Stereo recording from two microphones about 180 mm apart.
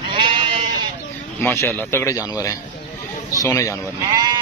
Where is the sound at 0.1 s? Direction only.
25° right (ahead or behind).